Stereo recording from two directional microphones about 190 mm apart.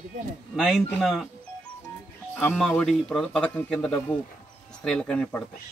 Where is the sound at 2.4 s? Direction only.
5° left (ahead or behind).